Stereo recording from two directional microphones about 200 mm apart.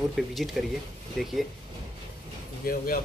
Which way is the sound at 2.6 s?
45° left (ahead or behind).